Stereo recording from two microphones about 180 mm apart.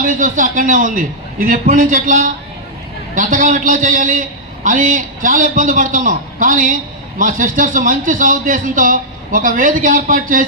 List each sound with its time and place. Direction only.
0.0 s a man's voice: 50° right (ahead or behind)